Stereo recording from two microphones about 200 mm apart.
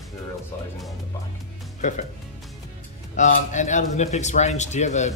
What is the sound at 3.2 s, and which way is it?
Speech, 35° left (ahead or behind).